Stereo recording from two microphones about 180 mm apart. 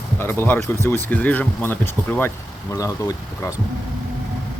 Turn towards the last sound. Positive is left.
turn(degrees=20)  # may be behind; listen again after turning